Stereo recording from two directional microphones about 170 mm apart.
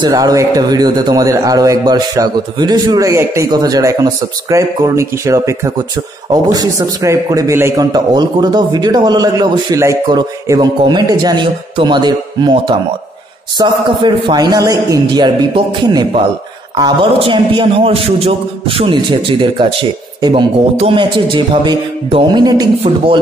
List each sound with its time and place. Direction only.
0.0 s a man's voice: 20° right (ahead or behind)